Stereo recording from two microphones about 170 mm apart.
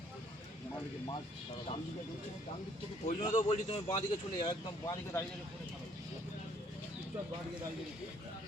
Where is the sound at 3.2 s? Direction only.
30° left (ahead or behind).